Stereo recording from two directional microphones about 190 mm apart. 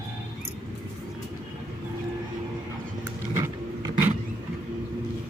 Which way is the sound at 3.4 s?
15° right (ahead or behind).